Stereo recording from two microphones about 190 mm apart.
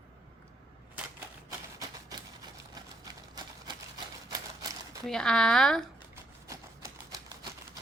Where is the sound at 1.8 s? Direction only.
20° right (ahead or behind).